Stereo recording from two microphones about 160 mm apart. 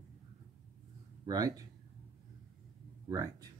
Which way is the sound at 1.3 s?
20° right (ahead or behind).